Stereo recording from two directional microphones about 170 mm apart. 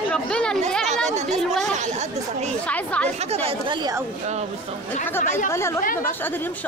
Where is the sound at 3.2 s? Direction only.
35° right (ahead or behind).